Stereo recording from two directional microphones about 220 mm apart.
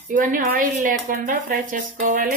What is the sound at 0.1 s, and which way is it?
Speech, 35° right (ahead or behind).